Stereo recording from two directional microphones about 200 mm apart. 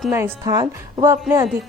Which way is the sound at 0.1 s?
10° right (ahead or behind).